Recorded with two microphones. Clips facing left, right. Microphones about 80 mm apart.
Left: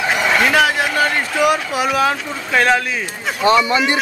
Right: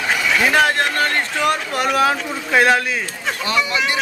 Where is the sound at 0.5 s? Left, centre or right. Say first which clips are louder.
Left 1 dB; centre.